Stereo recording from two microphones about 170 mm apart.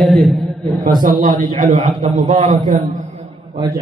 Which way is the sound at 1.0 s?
50° right (ahead or behind).